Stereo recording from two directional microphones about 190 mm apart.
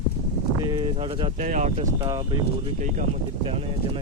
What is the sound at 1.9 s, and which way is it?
Speech, 20° right (ahead or behind).